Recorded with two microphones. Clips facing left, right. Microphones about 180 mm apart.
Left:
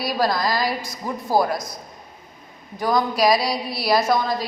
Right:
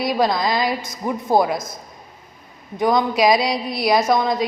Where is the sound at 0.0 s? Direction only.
20° right (ahead or behind).